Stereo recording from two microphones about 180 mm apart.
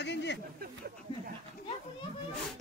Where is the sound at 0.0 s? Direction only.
75° left (ahead or behind).